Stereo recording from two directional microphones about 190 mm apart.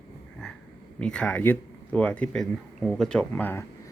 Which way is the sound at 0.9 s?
5° left (ahead or behind).